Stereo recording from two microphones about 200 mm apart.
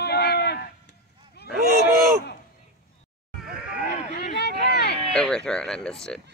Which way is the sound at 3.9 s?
45° left (ahead or behind).